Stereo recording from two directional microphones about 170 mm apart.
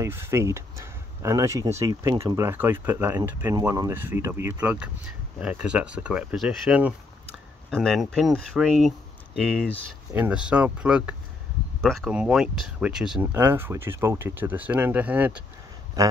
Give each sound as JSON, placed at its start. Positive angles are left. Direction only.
{"t": 0.0, "sound": "speech", "side_deg": -15}
{"t": 10.1, "sound": "speech", "side_deg": -10}
{"t": 13.2, "sound": "speech", "side_deg": -15}